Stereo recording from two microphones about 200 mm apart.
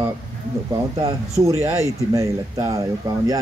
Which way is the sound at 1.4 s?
15° right (ahead or behind).